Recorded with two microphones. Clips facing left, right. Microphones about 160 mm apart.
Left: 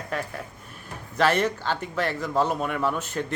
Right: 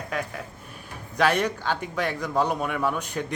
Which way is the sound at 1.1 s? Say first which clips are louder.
Left 1 dB; 10° right (ahead or behind).